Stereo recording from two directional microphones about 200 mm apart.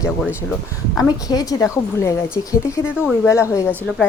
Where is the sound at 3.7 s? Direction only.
10° right (ahead or behind).